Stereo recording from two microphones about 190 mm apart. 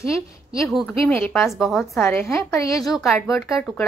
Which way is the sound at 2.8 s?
Centre (ahead or behind).